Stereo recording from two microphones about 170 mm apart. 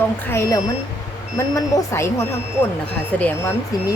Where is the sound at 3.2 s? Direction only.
10° left (ahead or behind).